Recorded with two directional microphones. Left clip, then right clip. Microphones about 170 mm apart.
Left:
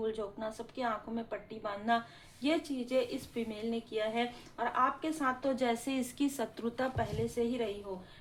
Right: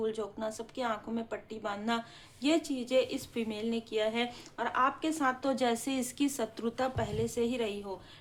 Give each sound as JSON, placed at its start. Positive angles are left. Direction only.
{"t": 0.0, "sound": "speech", "side_deg": -25}